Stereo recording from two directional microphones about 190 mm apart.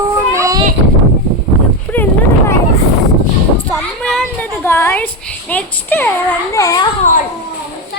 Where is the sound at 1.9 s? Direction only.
10° left (ahead or behind).